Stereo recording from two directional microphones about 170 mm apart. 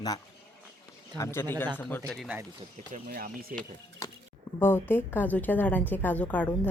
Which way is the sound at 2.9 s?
55° right (ahead or behind).